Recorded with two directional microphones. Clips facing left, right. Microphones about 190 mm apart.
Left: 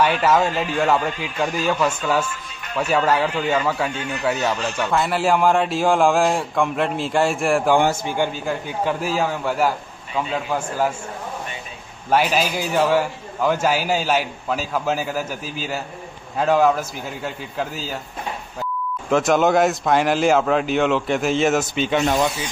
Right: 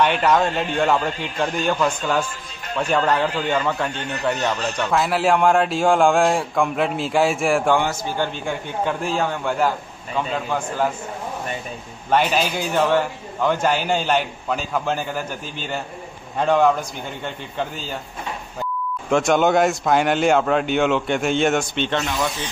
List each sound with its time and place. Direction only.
0.0 s speech: 5° left (ahead or behind)
7.9 s a man's voice: 20° left (ahead or behind)
8.5 s speech: 5° left (ahead or behind)
12.1 s speech: 5° left (ahead or behind)
19.0 s speech: centre (ahead or behind)